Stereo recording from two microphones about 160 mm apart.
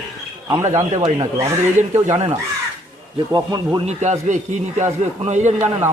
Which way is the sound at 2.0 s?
45° right (ahead or behind).